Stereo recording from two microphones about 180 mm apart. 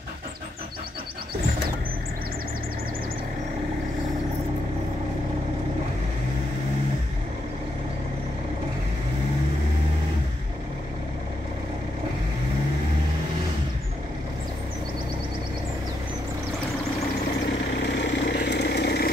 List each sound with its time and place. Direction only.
17.9 s vehicle: 70° left (ahead or behind)